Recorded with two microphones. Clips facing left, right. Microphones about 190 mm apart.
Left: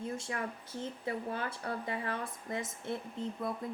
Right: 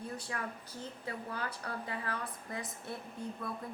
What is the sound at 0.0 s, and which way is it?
Speech, 25° left (ahead or behind).